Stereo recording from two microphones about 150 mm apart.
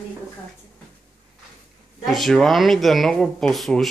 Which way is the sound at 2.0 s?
Centre (ahead or behind).